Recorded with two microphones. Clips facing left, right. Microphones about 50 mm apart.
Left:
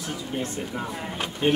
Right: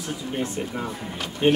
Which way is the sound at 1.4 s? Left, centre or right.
Right.